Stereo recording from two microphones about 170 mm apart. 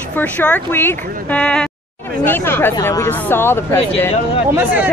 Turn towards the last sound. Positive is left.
turn(degrees=-10)  # may be behind; listen again after turning